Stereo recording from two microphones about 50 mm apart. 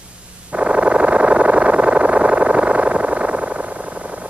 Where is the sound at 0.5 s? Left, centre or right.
Right.